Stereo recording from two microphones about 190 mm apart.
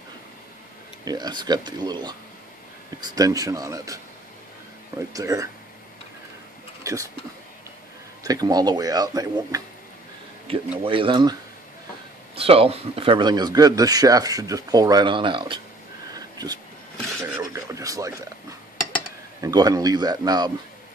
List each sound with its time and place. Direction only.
1.0 s speech: 20° right (ahead or behind)
6.8 s a sound: 15° right (ahead or behind)
8.2 s speech: 20° right (ahead or behind)
10.8 s speech: 25° right (ahead or behind)
12.4 s speech: 30° right (ahead or behind)
16.1 s a sound: 20° right (ahead or behind)
19.4 s speech: 20° right (ahead or behind)